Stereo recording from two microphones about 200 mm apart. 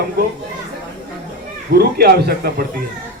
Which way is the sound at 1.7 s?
50° right (ahead or behind).